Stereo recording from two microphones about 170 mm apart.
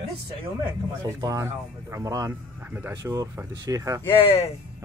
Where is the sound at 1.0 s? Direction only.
20° right (ahead or behind).